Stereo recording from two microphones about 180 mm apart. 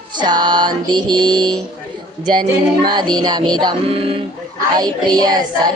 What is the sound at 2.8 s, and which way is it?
Music, 25° right (ahead or behind).